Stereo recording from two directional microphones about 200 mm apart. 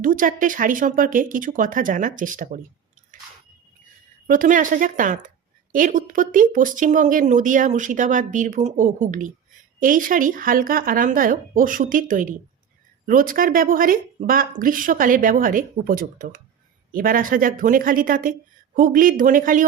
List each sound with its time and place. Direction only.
0.0 s speech: 40° right (ahead or behind)
4.3 s speech: 40° right (ahead or behind)